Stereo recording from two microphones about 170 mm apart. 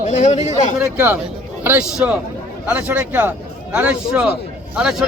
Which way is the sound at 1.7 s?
5° right (ahead or behind).